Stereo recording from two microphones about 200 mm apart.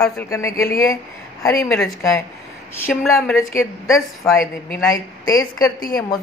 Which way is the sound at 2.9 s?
5° left (ahead or behind).